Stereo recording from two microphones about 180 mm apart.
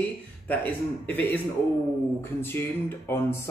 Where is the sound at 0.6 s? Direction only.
10° left (ahead or behind).